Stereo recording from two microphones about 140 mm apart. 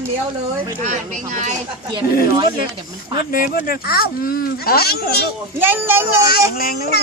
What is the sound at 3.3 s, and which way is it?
Speech, 90° left.